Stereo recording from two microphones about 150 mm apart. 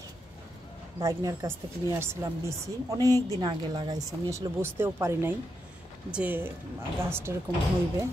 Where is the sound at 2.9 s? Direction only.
25° right (ahead or behind).